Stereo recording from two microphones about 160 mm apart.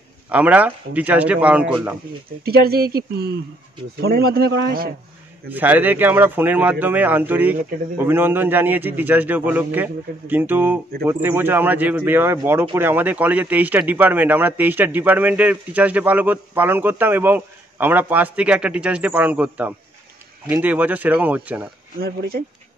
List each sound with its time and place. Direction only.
0.3 s speech: 10° right (ahead or behind)
2.4 s a man's voice: 75° right (ahead or behind)
4.0 s a man's voice: 70° right (ahead or behind)
5.5 s speech: 10° right (ahead or behind)